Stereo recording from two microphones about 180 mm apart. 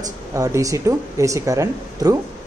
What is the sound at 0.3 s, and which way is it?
Speech, 20° right (ahead or behind).